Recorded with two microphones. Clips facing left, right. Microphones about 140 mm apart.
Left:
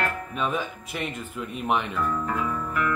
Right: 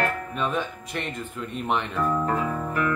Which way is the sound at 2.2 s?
35° right (ahead or behind).